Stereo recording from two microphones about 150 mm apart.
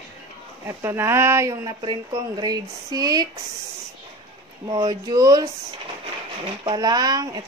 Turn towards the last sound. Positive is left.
turn(degrees=-25)  # may be behind; listen again after turning